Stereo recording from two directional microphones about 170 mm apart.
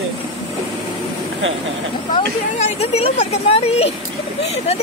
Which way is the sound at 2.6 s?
40° left (ahead or behind).